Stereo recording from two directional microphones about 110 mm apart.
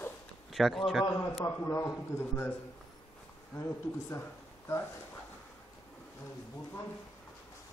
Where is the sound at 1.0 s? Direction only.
25° left (ahead or behind).